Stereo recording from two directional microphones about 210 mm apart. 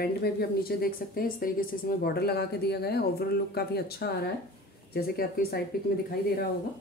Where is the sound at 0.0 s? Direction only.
45° left (ahead or behind).